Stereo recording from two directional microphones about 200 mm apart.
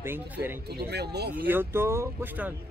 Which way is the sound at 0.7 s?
55° right (ahead or behind).